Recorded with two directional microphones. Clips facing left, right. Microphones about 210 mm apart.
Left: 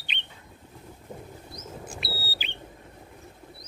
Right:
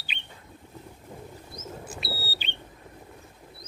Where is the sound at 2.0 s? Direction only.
Centre (ahead or behind).